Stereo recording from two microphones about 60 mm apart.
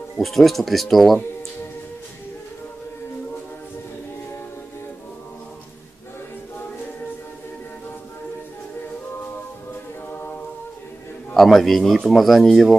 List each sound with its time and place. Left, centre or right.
0.1 s a man's voice: centre
10.1 s a capella: left
11.3 s a man's voice: centre